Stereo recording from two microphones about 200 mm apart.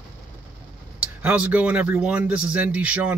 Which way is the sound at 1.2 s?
5° right (ahead or behind).